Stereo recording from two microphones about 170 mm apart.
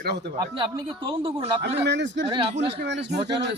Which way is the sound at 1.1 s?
30° right (ahead or behind).